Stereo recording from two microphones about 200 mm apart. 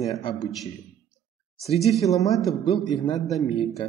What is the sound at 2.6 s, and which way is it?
Speech, 30° left (ahead or behind).